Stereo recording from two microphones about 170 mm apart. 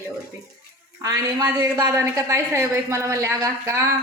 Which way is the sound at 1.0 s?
15° right (ahead or behind).